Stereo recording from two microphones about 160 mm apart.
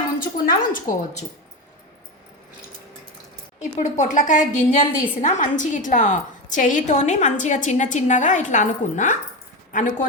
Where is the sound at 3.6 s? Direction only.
50° left (ahead or behind).